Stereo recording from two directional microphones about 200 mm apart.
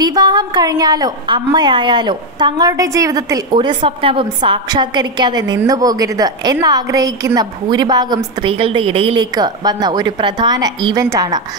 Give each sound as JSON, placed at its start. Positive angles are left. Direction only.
{"t": 0.0, "sound": "a woman's voice", "side_deg": -20}